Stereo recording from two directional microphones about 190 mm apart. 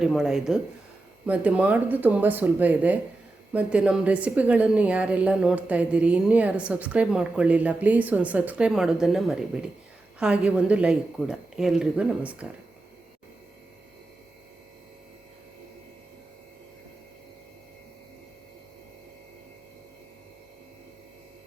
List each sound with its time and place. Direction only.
0.0 s a woman's voice: centre (ahead or behind)